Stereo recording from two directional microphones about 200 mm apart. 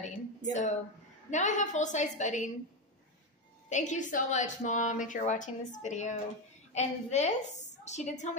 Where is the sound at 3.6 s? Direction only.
35° left (ahead or behind).